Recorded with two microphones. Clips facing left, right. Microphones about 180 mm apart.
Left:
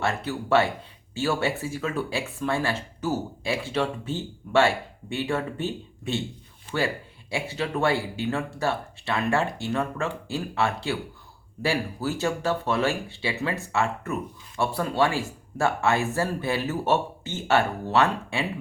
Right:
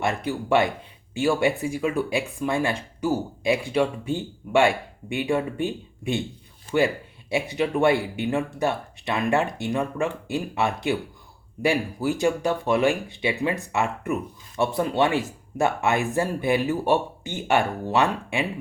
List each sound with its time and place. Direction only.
0.0 s speech: 15° right (ahead or behind)